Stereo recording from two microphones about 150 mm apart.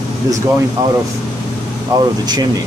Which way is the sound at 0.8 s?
25° right (ahead or behind).